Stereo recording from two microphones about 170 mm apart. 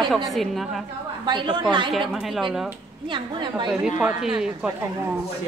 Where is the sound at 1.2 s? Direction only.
25° right (ahead or behind).